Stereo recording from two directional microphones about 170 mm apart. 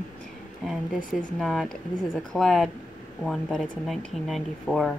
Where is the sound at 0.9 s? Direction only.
50° left (ahead or behind).